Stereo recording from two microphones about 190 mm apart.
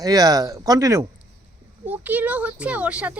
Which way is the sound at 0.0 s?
20° right (ahead or behind).